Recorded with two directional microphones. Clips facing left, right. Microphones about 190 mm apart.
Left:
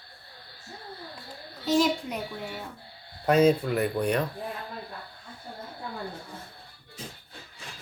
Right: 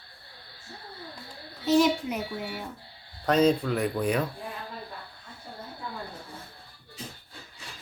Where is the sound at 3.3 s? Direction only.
10° left (ahead or behind).